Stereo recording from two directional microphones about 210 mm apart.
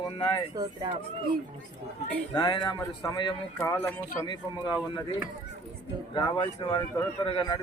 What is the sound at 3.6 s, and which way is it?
Speech, 10° left (ahead or behind).